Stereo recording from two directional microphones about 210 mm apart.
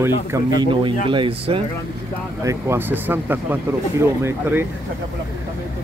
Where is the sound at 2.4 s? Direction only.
15° right (ahead or behind).